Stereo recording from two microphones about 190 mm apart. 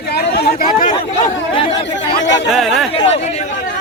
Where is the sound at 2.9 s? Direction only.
30° left (ahead or behind).